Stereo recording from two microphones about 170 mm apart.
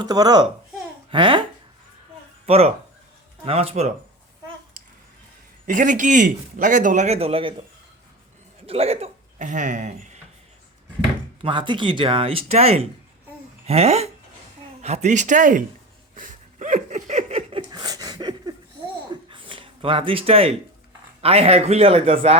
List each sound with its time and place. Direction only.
0.0 s a child's voice: 20° right (ahead or behind)
2.5 s speech: 35° right (ahead or behind)
5.6 s a man's voice: 50° right (ahead or behind)
8.6 s speech: 35° right (ahead or behind)
11.4 s a man's voice: 30° right (ahead or behind); by 15.6 s 50° right (ahead or behind)
16.1 s a sound: 50° right (ahead or behind); by 20.6 s 35° right (ahead or behind)
21.2 s speech: 35° right (ahead or behind)